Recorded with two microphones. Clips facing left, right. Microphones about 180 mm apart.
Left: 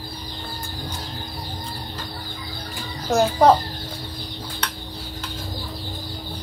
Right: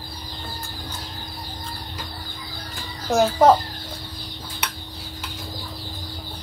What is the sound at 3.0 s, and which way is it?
Speech, centre (ahead or behind).